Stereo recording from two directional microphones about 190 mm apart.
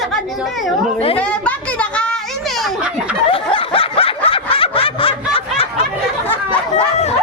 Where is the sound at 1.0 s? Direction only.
30° left (ahead or behind).